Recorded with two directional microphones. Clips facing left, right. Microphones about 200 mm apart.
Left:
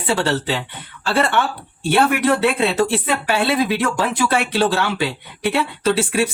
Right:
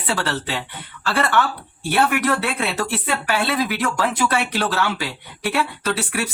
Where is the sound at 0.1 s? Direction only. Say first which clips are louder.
Left 5 dB; 25° left (ahead or behind).